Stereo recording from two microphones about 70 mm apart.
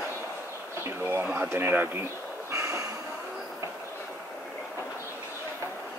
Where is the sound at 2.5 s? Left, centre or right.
Right.